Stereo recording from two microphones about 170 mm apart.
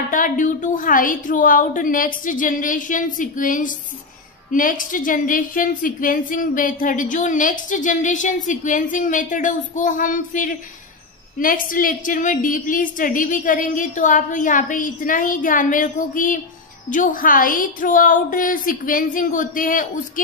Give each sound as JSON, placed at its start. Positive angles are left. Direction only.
{"t": 0.1, "sound": "a woman's voice", "side_deg": 50}